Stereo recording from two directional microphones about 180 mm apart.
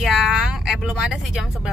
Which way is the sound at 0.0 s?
Centre (ahead or behind).